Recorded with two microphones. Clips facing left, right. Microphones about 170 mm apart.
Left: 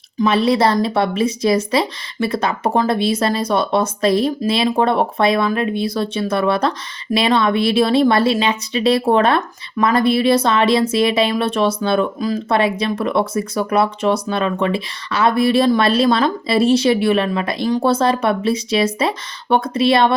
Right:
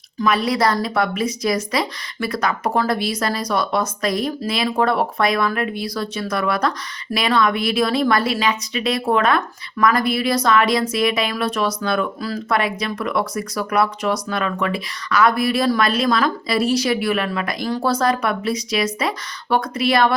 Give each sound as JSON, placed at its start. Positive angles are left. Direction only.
{"t": 0.2, "sound": "speech", "side_deg": 25}